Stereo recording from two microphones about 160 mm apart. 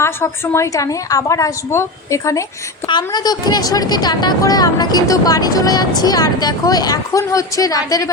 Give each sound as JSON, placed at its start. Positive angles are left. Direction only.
{"t": 0.0, "sound": "a woman's voice", "side_deg": 15}